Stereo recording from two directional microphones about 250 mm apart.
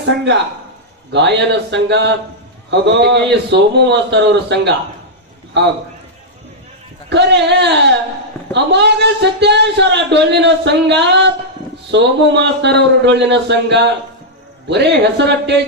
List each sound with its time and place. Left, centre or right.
1.1 s speech: right
7.1 s speech: right